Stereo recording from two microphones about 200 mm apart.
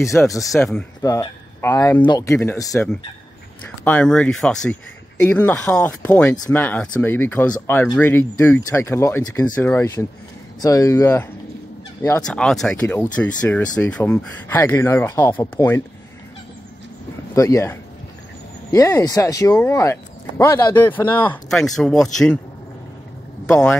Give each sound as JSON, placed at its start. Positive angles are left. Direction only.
{"t": 0.2, "sound": "speech", "side_deg": 15}
{"t": 0.5, "sound": "speech", "side_deg": 0}
{"t": 1.6, "sound": "speech", "side_deg": 15}
{"t": 6.3, "sound": "speech", "side_deg": 20}
{"t": 6.6, "sound": "speech", "side_deg": 5}
{"t": 17.4, "sound": "speech", "side_deg": 15}